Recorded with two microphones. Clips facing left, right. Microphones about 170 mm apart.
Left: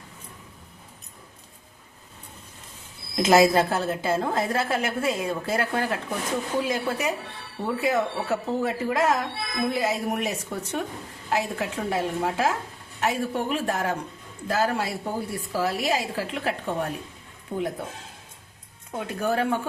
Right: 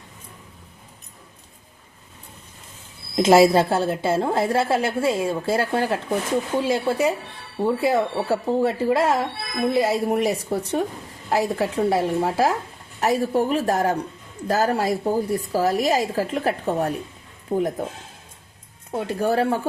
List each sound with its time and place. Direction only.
3.2 s a woman's voice: 30° right (ahead or behind)
18.9 s speech: 30° right (ahead or behind)